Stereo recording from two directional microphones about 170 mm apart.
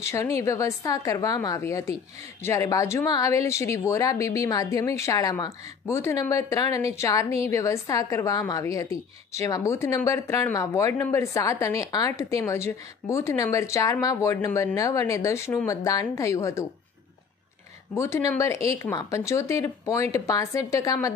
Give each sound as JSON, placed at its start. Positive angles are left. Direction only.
{"t": 0.0, "sound": "speech", "side_deg": 15}
{"t": 17.9, "sound": "speech", "side_deg": 15}